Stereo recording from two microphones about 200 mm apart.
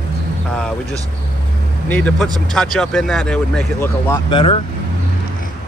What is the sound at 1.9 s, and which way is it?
Speech, 5° left (ahead or behind).